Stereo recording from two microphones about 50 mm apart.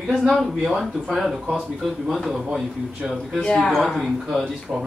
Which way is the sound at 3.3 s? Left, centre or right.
Centre.